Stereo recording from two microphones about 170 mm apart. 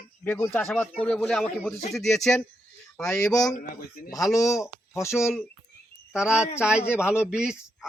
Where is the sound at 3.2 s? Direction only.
20° left (ahead or behind).